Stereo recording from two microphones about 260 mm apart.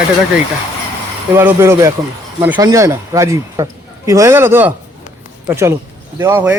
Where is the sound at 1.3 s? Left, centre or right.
Centre.